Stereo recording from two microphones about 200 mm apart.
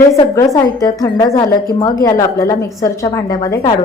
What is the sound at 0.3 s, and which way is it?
A woman's voice, 15° left (ahead or behind).